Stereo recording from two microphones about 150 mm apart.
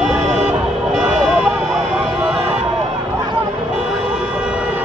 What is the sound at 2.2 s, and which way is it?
Music, 5° right (ahead or behind).